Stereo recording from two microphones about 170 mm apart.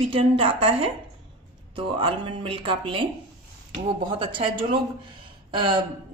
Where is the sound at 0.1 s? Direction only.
30° right (ahead or behind).